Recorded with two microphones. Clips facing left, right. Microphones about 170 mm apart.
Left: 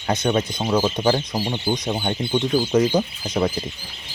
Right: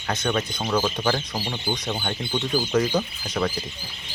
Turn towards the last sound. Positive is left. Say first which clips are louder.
# left 4 dB
turn(degrees=20)  # may be behind; listen again after turning